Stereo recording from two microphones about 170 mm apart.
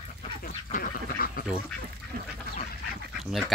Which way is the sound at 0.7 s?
60° left (ahead or behind).